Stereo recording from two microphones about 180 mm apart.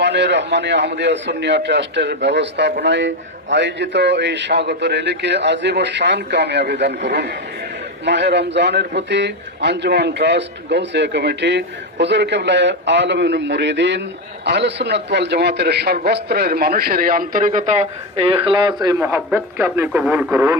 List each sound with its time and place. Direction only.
0.0 s a man's voice: 75° right (ahead or behind); by 17.8 s 45° right (ahead or behind)
18.2 s speech: 30° right (ahead or behind); by 20.6 s 15° right (ahead or behind)